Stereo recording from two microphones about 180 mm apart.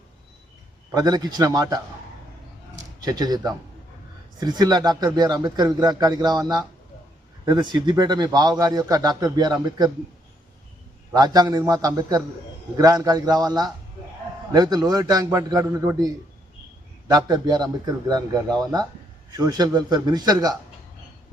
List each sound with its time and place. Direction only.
0.9 s speech: 20° right (ahead or behind)
3.0 s speech: 20° right (ahead or behind)
11.1 s speech: 20° right (ahead or behind)
17.1 s speech: 20° right (ahead or behind)
19.4 s speech: 20° right (ahead or behind)